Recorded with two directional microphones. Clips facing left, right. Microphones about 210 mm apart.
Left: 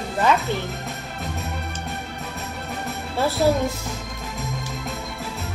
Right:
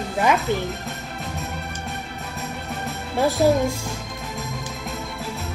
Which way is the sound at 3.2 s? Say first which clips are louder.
Right 2 dB; 15° right (ahead or behind).